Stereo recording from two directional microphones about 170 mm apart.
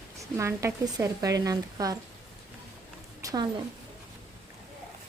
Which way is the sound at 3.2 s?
25° right (ahead or behind).